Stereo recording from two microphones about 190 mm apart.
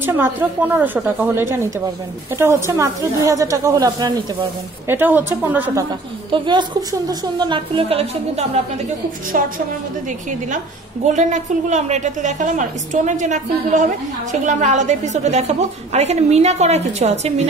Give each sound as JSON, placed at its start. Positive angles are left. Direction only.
{"t": 0.0, "sound": "speech", "side_deg": -10}
{"t": 4.8, "sound": "speech", "side_deg": -10}
{"t": 6.3, "sound": "a woman's voice", "side_deg": -25}
{"t": 11.1, "sound": "a woman's voice", "side_deg": -40}